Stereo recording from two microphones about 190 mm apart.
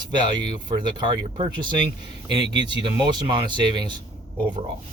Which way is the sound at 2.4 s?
65° right (ahead or behind).